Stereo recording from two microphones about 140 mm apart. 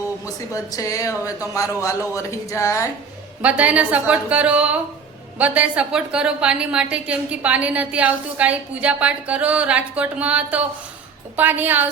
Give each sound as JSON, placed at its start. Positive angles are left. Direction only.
{"t": 0.5, "sound": "speech", "side_deg": 25}
{"t": 3.4, "sound": "a woman's voice", "side_deg": -10}